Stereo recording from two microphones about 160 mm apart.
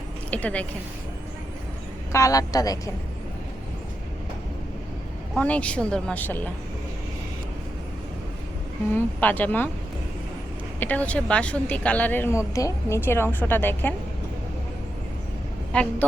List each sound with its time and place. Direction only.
0.3 s speech: 10° left (ahead or behind)
2.1 s a woman's voice: 20° left (ahead or behind)
5.3 s speech: 10° left (ahead or behind)
8.9 s speech: 10° left (ahead or behind)
10.8 s speech: 10° left (ahead or behind)
15.7 s speech: 5° left (ahead or behind)